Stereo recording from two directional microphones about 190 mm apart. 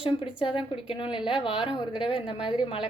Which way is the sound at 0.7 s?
30° left (ahead or behind).